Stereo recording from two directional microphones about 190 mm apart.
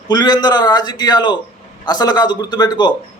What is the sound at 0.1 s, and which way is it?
A man's voice, 20° left (ahead or behind).